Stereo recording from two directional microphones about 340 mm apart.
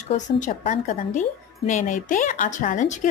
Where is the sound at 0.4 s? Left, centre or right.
Left.